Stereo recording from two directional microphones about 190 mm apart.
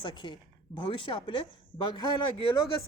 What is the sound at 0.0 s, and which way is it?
A woman's voice, 25° left (ahead or behind).